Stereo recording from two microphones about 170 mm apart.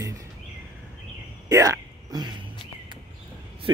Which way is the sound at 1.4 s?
20° right (ahead or behind).